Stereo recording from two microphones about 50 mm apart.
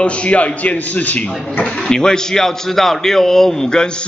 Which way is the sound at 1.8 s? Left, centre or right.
Centre.